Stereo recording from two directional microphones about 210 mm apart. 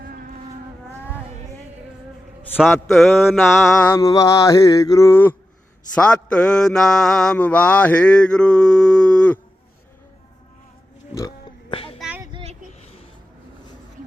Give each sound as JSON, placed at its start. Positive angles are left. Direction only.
{"t": 0.0, "sound": "vehicle", "side_deg": -45}
{"t": 2.7, "sound": "mantra", "side_deg": 0}
{"t": 3.7, "sound": "mantra", "side_deg": 10}
{"t": 11.1, "sound": "oink", "side_deg": 15}
{"t": 11.9, "sound": "child singing", "side_deg": -5}
{"t": 12.2, "sound": "child singing", "side_deg": -25}